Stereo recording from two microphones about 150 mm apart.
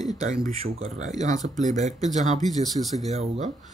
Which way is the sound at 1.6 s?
50° right (ahead or behind).